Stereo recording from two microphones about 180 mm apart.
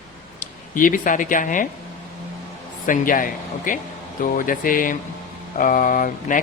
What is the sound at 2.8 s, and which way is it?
Speech, 50° left (ahead or behind).